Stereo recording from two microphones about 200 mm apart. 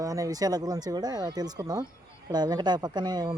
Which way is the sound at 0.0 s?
15° right (ahead or behind).